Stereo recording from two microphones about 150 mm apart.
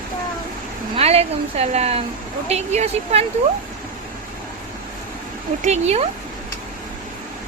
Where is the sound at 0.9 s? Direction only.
45° right (ahead or behind).